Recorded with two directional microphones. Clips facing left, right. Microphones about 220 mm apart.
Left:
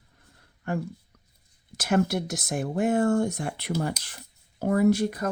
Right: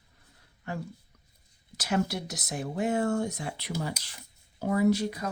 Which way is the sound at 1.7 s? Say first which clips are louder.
Left 5 dB; 55° left (ahead or behind).